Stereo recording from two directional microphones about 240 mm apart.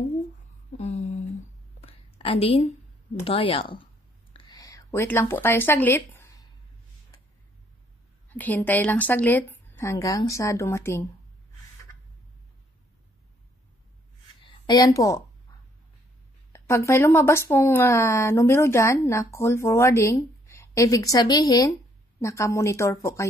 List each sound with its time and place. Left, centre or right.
0.7 s a sound: left
3.3 s a woman's voice: left
4.3 s a sound: centre
8.3 s speech: centre
14.4 s a woman's voice: centre
16.5 s speech: centre